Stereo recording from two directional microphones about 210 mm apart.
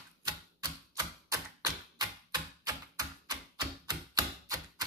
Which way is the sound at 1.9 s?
20° right (ahead or behind).